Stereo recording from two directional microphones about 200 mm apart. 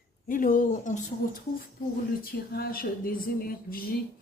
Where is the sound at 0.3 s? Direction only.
45° left (ahead or behind).